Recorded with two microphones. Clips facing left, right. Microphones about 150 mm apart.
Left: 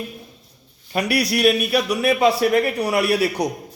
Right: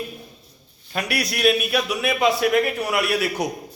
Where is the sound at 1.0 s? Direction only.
35° left (ahead or behind).